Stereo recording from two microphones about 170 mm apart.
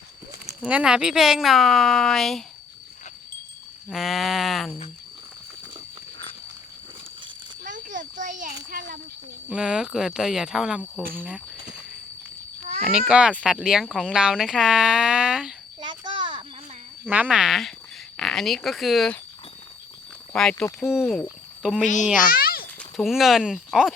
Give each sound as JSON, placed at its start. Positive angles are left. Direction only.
{"t": 0.6, "sound": "speech", "side_deg": -5}
{"t": 3.8, "sound": "speech", "side_deg": 0}
{"t": 7.6, "sound": "a sound", "side_deg": -50}
{"t": 9.5, "sound": "speech", "side_deg": -5}
{"t": 12.9, "sound": "speech", "side_deg": -5}
{"t": 15.8, "sound": "insect", "side_deg": -30}
{"t": 17.1, "sound": "speech", "side_deg": -10}
{"t": 20.3, "sound": "speech", "side_deg": 5}
{"t": 22.2, "sound": "babbling", "side_deg": 60}
{"t": 22.8, "sound": "speech", "side_deg": 0}